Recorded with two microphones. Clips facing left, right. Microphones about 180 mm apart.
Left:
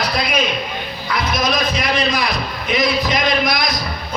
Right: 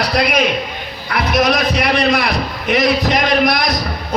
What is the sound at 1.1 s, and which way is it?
Music, 65° right (ahead or behind).